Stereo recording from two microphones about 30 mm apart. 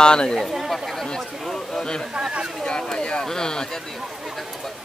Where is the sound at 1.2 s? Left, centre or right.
Centre.